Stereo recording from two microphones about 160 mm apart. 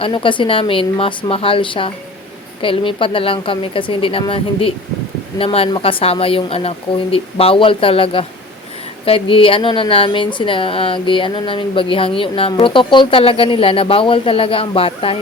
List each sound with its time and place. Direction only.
0.0 s speech: 30° left (ahead or behind)